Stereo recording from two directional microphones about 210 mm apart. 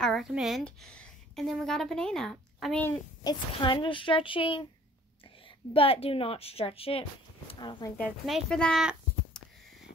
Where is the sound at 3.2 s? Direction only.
20° left (ahead or behind).